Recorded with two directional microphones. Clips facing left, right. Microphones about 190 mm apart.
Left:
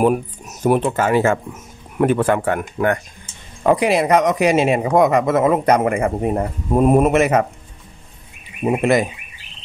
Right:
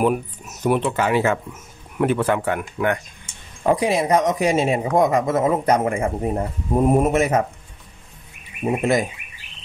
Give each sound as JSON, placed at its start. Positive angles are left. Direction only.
{"t": 0.0, "sound": "speech", "side_deg": 45}
{"t": 3.6, "sound": "speech", "side_deg": 70}